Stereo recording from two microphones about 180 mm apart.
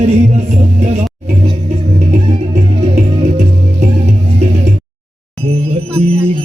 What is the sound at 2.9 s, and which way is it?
Music, 35° right (ahead or behind).